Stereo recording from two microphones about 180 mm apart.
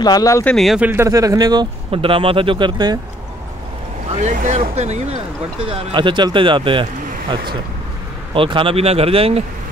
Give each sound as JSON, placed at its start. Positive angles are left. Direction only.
{"t": 0.0, "sound": "speech", "side_deg": 20}
{"t": 0.6, "sound": "speech", "side_deg": -5}
{"t": 4.2, "sound": "speech", "side_deg": -45}